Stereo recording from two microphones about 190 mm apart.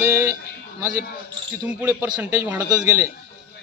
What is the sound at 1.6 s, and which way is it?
A man's voice, 10° right (ahead or behind).